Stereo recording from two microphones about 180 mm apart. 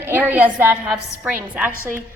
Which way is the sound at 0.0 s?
10° right (ahead or behind).